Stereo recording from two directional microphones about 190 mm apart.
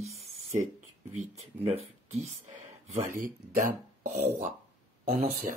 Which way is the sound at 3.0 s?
45° right (ahead or behind).